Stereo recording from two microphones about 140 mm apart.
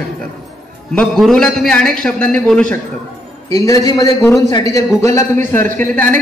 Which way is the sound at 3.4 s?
25° left (ahead or behind).